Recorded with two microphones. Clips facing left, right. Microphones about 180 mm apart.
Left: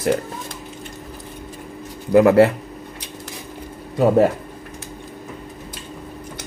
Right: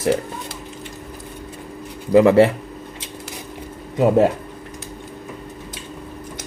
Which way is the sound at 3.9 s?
20° right (ahead or behind).